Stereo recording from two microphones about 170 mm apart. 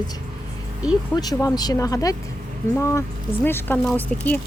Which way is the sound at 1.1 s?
20° left (ahead or behind).